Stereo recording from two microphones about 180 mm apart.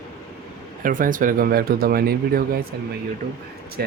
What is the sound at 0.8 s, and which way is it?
Speech, 50° right (ahead or behind).